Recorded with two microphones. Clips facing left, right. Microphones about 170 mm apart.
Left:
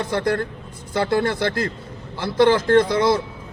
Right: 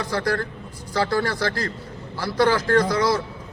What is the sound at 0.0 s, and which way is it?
A man's voice, 25° left (ahead or behind).